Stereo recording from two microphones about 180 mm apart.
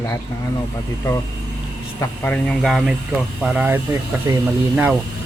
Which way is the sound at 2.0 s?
10° left (ahead or behind).